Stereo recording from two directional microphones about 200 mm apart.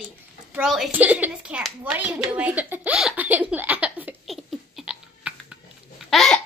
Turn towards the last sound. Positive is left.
turn(degrees=0)  # may be behind; listen again after turning